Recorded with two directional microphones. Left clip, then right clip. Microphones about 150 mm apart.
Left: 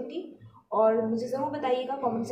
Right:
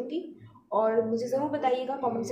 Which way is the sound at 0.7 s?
30° right (ahead or behind).